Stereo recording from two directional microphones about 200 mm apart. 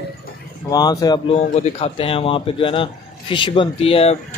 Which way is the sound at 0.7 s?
20° left (ahead or behind).